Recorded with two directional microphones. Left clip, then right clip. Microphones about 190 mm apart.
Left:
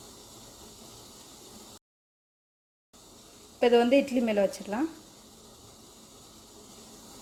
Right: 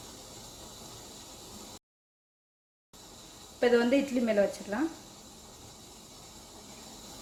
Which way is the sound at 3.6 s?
35° left (ahead or behind).